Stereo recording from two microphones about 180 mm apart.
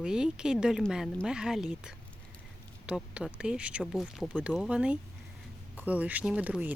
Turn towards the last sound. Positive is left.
turn(degrees=-10)  # may be behind; listen again after turning